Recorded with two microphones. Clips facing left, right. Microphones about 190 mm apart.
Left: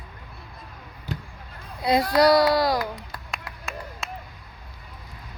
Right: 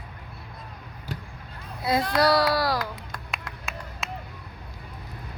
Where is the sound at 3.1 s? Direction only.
Centre (ahead or behind).